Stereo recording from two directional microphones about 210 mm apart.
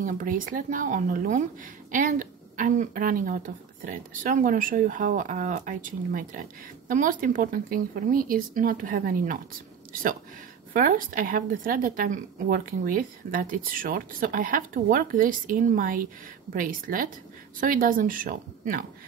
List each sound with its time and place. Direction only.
0.0 s speech: 40° right (ahead or behind)
10.7 s speech: 40° right (ahead or behind)